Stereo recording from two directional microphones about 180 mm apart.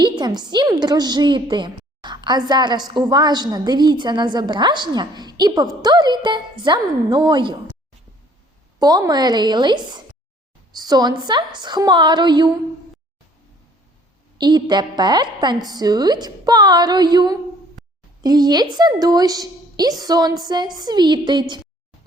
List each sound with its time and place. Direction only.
0.0 s a woman's voice: 25° right (ahead or behind)
8.8 s a woman's voice: 20° right (ahead or behind)
14.3 s a woman's voice: 25° right (ahead or behind)